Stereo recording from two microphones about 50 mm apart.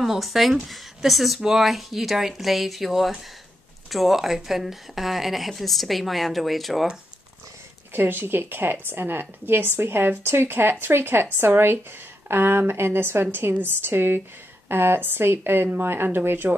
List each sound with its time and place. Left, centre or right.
0.0 s a woman's voice: centre
7.9 s a woman's voice: right